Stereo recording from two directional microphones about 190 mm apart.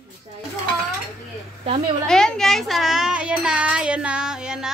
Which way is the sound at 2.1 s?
5° left (ahead or behind).